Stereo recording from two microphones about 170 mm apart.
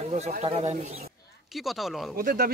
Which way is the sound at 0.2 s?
40° right (ahead or behind).